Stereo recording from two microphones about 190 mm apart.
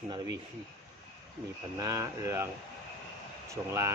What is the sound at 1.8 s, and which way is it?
Speech, 15° right (ahead or behind).